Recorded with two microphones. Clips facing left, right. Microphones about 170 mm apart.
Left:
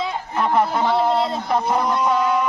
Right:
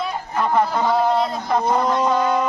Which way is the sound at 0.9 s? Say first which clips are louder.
Right 1 dB; 30° left (ahead or behind).